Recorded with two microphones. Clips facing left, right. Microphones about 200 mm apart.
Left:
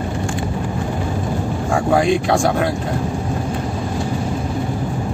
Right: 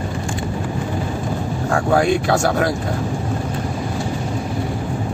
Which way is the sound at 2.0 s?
Centre (ahead or behind).